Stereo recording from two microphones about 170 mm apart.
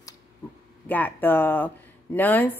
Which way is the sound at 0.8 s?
10° left (ahead or behind).